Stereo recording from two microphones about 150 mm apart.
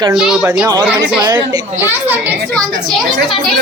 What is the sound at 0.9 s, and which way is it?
Speech, 25° right (ahead or behind).